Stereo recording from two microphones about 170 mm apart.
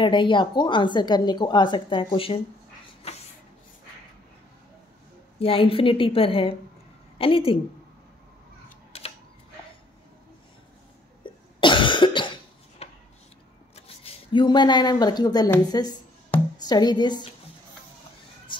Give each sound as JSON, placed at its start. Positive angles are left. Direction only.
{"t": 0.0, "sound": "a woman's voice", "side_deg": 30}
{"t": 5.4, "sound": "a woman's voice", "side_deg": 30}
{"t": 11.2, "sound": "cough", "side_deg": 30}
{"t": 13.7, "sound": "a woman's voice", "side_deg": 35}
{"t": 18.5, "sound": "a sound", "side_deg": 30}